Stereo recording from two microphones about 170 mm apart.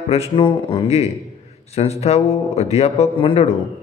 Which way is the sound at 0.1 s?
35° left (ahead or behind).